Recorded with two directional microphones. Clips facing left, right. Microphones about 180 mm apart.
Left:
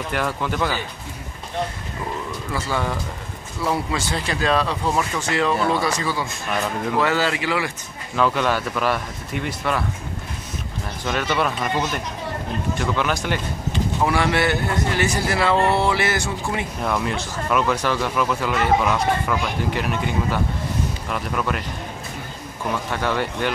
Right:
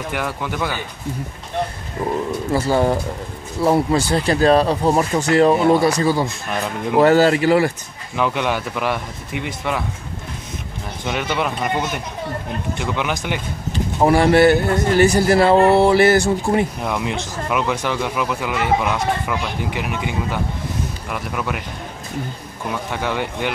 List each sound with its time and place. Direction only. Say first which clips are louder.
0.1 s speech: left 2 dB; 10° right (ahead or behind)
2.5 s speech: right 8 dB; 35° right (ahead or behind)
8.2 s speech: even; 15° right (ahead or behind)
11.1 s speech: even; 15° right (ahead or behind)
12.7 s speech: even; 15° right (ahead or behind)
14.0 s speech: right 9 dB; 40° right (ahead or behind)
16.8 s speech: right 1 dB; 15° right (ahead or behind)
22.7 s speech: even; 15° right (ahead or behind)